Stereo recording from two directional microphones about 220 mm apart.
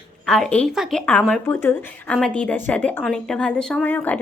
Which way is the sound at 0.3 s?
5° left (ahead or behind).